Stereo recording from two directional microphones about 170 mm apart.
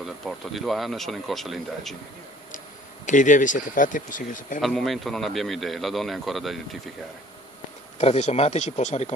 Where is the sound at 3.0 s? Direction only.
45° left (ahead or behind).